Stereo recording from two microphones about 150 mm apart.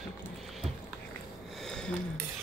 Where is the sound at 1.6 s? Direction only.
5° left (ahead or behind).